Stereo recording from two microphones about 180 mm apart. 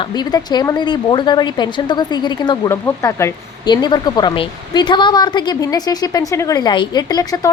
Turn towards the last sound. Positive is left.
turn(degrees=20)  # may be behind; listen again after turning